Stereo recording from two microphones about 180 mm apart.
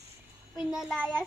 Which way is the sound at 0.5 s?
Centre (ahead or behind).